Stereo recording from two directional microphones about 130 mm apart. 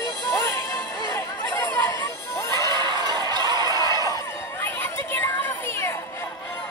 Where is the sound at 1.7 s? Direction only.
20° left (ahead or behind).